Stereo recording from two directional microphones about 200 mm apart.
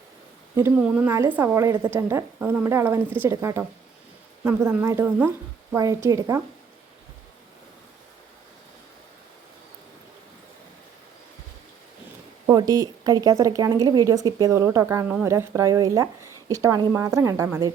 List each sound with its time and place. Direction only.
0.5 s a woman's voice: 10° right (ahead or behind)
12.5 s a woman's voice: 20° right (ahead or behind)